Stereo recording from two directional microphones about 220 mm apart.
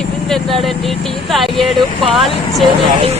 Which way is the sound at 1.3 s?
Centre (ahead or behind).